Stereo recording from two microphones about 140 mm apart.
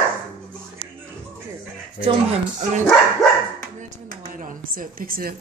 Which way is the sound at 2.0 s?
35° right (ahead or behind).